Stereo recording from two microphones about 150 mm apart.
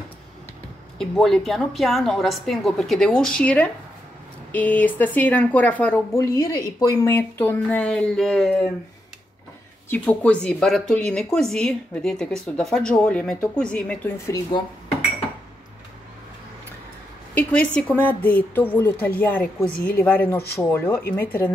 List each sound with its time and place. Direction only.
0.9 s a woman's voice: 5° left (ahead or behind)
9.8 s a woman's voice: 10° left (ahead or behind)
14.1 s speech: 20° left (ahead or behind)
17.3 s speech: 10° left (ahead or behind)